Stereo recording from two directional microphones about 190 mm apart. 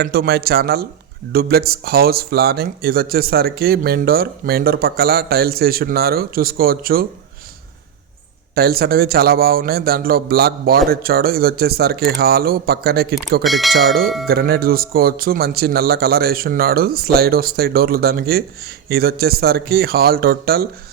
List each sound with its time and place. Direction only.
0.0 s speech: 55° right (ahead or behind)
8.5 s speech: 55° right (ahead or behind)
13.4 s speech: centre (ahead or behind)
14.3 s speech: 55° right (ahead or behind)